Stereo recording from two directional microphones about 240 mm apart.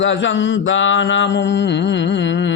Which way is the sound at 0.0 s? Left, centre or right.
Left.